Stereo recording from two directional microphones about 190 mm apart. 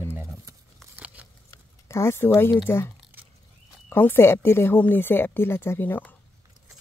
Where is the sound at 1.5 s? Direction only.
15° left (ahead or behind).